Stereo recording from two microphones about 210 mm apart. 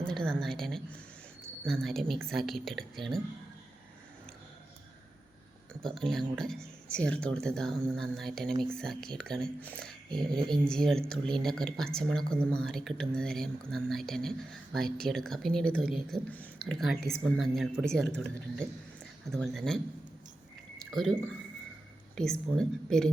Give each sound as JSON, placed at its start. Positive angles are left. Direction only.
{"t": 0.0, "sound": "a woman's voice", "side_deg": 5}
{"t": 5.8, "sound": "speech", "side_deg": 0}
{"t": 10.1, "sound": "a sound", "side_deg": -20}
{"t": 10.5, "sound": "speech", "side_deg": 0}
{"t": 19.3, "sound": "speech", "side_deg": 0}
{"t": 20.7, "sound": "drip", "side_deg": 0}
{"t": 22.1, "sound": "speech", "side_deg": 5}